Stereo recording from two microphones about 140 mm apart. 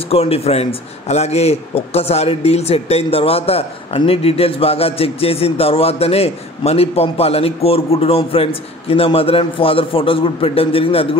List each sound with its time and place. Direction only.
0.1 s speech: 45° left (ahead or behind)